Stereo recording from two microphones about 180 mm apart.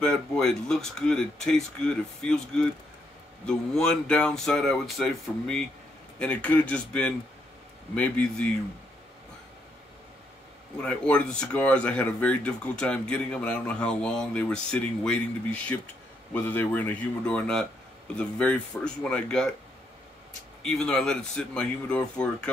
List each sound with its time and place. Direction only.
0.0 s speech: 5° left (ahead or behind)
10.8 s speech: 5° left (ahead or behind)
20.6 s speech: 5° left (ahead or behind)